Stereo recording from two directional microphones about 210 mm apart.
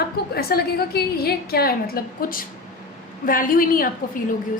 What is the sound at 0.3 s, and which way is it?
A woman's voice, 45° left (ahead or behind).